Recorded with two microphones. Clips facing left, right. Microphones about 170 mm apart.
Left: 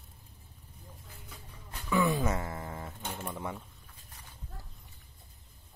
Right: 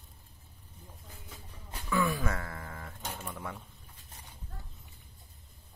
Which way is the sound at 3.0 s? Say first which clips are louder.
Even; 10° left (ahead or behind).